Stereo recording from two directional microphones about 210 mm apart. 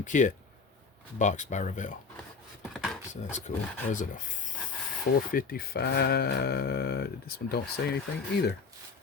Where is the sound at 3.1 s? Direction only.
35° left (ahead or behind).